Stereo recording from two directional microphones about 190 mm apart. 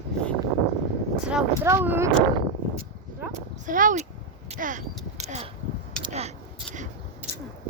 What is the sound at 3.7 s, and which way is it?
Speech, 45° right (ahead or behind).